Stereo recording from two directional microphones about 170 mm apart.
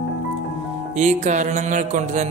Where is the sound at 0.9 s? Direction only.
45° right (ahead or behind).